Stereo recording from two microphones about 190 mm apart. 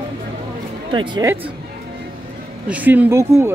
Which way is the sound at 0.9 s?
25° right (ahead or behind).